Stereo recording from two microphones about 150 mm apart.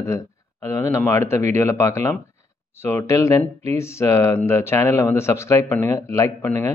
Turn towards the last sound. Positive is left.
turn(degrees=15)  # may be behind; listen again after turning